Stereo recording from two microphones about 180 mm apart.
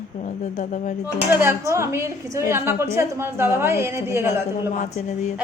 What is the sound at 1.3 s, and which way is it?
A woman's voice, 10° right (ahead or behind).